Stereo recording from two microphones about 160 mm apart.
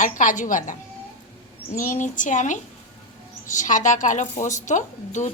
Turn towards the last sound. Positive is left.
turn(degrees=50)  # may be behind; listen again after turning